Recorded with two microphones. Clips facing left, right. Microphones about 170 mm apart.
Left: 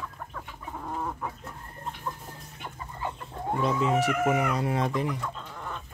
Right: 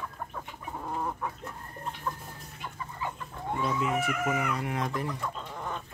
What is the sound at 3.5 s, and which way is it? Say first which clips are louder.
Speech: left 4 dB; 30° left (ahead or behind).